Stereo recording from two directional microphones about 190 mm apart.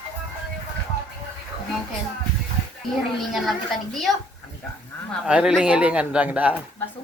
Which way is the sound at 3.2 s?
Centre (ahead or behind).